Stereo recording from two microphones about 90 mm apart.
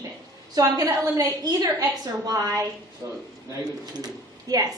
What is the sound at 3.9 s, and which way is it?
Speech, 45° right (ahead or behind).